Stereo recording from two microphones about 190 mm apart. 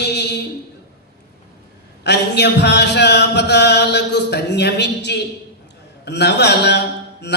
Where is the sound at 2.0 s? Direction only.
65° left (ahead or behind).